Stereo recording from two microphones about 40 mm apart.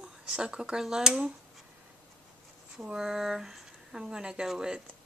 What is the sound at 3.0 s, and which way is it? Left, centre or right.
Speech, centre.